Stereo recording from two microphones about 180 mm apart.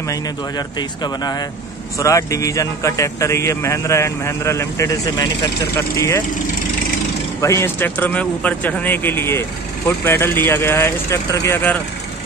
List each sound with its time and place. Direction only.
0.1 s speech: 20° left (ahead or behind)
7.4 s speech: 15° left (ahead or behind)